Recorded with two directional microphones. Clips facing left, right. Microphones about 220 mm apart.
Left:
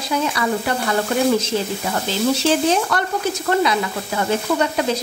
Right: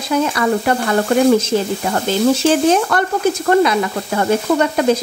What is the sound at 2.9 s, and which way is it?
Stir, 50° right (ahead or behind).